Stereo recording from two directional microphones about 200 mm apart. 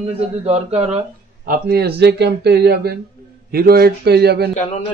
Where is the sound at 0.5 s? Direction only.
35° right (ahead or behind).